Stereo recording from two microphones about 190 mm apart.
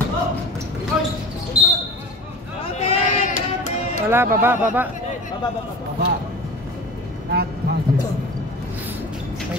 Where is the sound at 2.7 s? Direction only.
35° left (ahead or behind).